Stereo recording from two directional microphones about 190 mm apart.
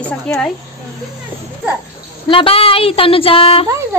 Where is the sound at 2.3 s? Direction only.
30° left (ahead or behind).